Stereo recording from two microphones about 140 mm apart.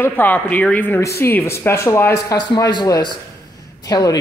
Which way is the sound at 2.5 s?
30° left (ahead or behind).